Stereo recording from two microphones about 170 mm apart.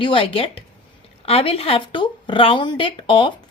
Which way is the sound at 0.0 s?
30° left (ahead or behind).